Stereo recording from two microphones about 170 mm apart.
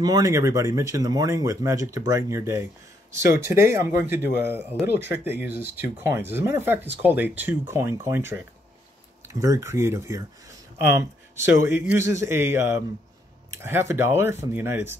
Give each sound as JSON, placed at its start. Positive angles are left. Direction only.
{"t": 0.0, "sound": "speech", "side_deg": -20}